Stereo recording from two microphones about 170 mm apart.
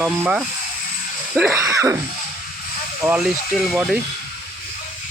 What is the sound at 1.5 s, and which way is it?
Speech, 20° right (ahead or behind).